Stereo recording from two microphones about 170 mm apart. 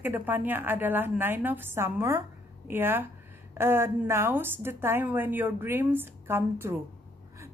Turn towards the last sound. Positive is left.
turn(degrees=-15)  # may be behind; listen again after turning